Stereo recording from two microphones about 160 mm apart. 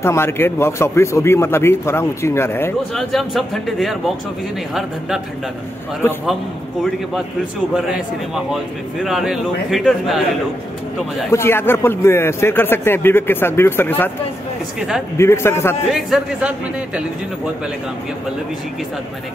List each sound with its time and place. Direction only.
0.0 s speech: 15° left (ahead or behind)
2.9 s speech: centre (ahead or behind)
9.0 s speech: centre (ahead or behind)
11.2 s speech: 15° left (ahead or behind)
14.8 s speech: 5° right (ahead or behind)
15.1 s speech: 15° left (ahead or behind)
15.9 s speech: 5° right (ahead or behind)